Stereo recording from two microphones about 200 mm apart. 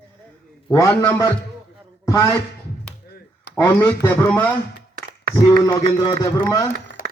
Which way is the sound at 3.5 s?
15° left (ahead or behind).